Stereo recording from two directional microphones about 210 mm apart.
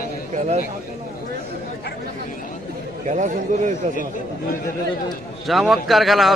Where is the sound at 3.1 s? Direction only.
35° right (ahead or behind).